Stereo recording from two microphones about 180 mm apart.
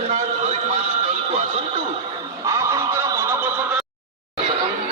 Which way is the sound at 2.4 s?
15° right (ahead or behind).